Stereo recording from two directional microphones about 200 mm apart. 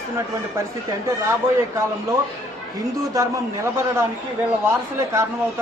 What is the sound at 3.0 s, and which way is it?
A man's voice, 15° right (ahead or behind).